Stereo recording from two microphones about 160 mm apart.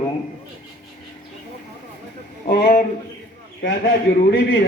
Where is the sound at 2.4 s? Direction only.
55° left (ahead or behind).